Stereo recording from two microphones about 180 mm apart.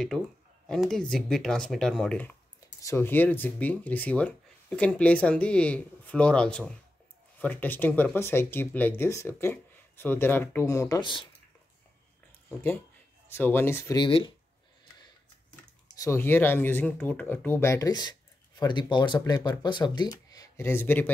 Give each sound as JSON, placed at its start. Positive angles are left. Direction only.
{"t": 0.7, "sound": "speech", "side_deg": 5}
{"t": 13.3, "sound": "speech", "side_deg": 10}
{"t": 13.9, "sound": "speech", "side_deg": 25}
{"t": 16.0, "sound": "speech", "side_deg": 15}